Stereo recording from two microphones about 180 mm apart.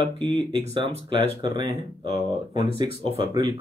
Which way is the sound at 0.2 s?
25° right (ahead or behind).